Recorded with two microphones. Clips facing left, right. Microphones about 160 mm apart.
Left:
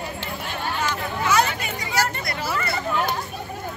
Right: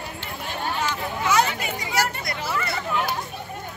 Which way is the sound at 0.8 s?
15° right (ahead or behind).